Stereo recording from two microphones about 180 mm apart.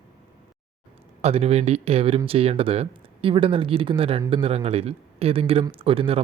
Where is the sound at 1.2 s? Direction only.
35° right (ahead or behind).